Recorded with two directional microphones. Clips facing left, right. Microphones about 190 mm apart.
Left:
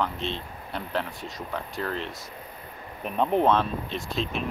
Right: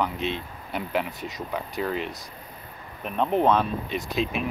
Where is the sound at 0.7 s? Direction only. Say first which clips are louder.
Right 3 dB; 10° right (ahead or behind).